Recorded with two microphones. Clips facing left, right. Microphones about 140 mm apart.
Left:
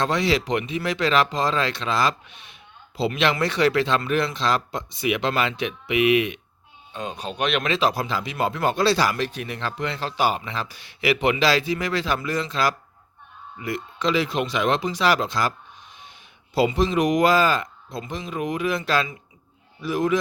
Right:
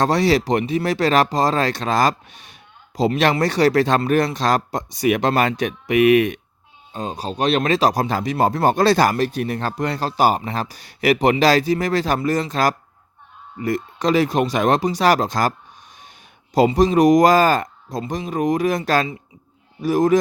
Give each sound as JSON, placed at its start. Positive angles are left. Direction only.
{"t": 0.0, "sound": "speech", "side_deg": -40}
{"t": 6.9, "sound": "speech", "side_deg": -35}
{"t": 16.6, "sound": "speech", "side_deg": -40}